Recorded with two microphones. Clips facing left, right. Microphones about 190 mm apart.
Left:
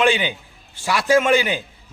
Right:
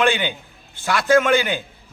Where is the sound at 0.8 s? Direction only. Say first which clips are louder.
Even; 10° left (ahead or behind).